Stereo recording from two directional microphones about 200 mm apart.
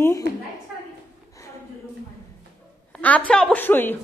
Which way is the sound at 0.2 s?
60° right (ahead or behind).